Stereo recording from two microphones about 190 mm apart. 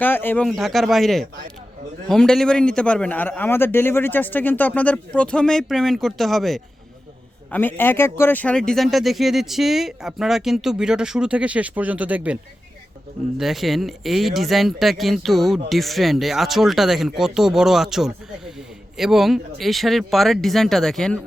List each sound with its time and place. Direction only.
0.0 s speech: 10° left (ahead or behind)
0.4 s speech: centre (ahead or behind)
13.4 s speech: centre (ahead or behind)